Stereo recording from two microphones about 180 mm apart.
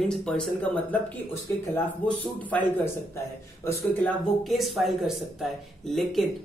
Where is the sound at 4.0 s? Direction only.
Centre (ahead or behind).